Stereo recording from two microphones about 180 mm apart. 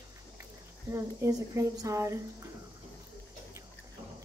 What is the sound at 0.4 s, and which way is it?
Speech, 15° right (ahead or behind).